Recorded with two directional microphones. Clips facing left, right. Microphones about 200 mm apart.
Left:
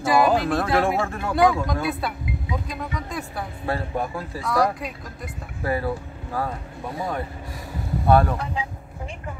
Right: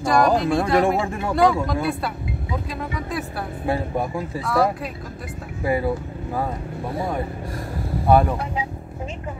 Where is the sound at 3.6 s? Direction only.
15° right (ahead or behind).